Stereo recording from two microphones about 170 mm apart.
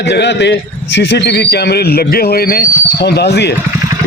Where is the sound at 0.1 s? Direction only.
85° left.